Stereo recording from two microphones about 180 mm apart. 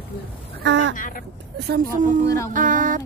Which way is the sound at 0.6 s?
90° right.